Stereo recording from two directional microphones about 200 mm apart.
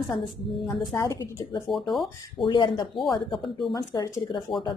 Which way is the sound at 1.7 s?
Centre (ahead or behind).